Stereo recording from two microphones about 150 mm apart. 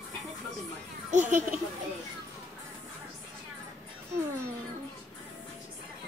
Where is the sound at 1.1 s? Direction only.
55° right (ahead or behind).